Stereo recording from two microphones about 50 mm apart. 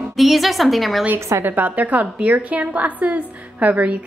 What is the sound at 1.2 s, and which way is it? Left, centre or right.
Speech, right.